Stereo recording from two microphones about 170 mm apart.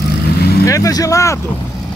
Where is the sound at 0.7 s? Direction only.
20° left (ahead or behind).